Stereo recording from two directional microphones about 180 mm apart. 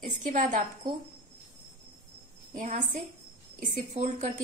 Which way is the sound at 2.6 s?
45° right (ahead or behind).